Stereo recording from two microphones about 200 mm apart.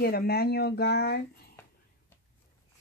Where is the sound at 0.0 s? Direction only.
50° left (ahead or behind).